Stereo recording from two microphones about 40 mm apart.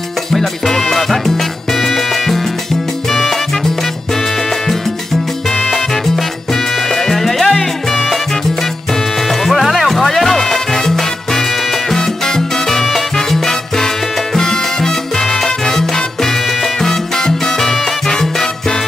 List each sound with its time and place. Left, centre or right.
0.3 s music: centre
3.1 s salsa music: centre
6.9 s music: centre
9.4 s music: centre
11.9 s salsa music: centre
16.8 s salsa music: centre